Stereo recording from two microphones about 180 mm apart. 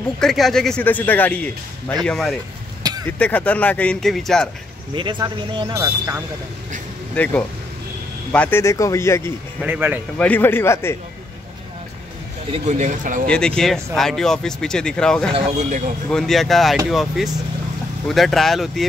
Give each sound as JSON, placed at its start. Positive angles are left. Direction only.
{"t": 0.2, "sound": "speech", "side_deg": 0}
{"t": 4.9, "sound": "speech", "side_deg": -25}
{"t": 7.2, "sound": "speech", "side_deg": 10}
{"t": 9.6, "sound": "speech", "side_deg": -10}
{"t": 10.1, "sound": "speech", "side_deg": 10}
{"t": 12.5, "sound": "speech", "side_deg": -40}
{"t": 13.3, "sound": "speech", "side_deg": 5}
{"t": 15.3, "sound": "speech", "side_deg": -40}
{"t": 16.1, "sound": "speech", "side_deg": 0}